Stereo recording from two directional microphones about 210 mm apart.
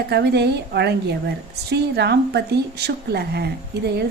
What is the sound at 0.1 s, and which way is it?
A woman's voice, 50° right (ahead or behind).